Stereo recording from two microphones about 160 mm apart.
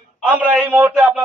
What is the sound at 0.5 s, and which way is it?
Speech, 10° right (ahead or behind).